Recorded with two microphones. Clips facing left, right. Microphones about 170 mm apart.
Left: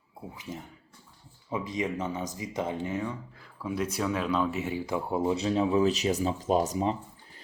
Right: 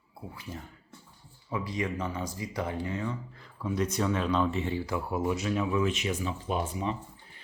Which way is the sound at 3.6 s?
5° left (ahead or behind).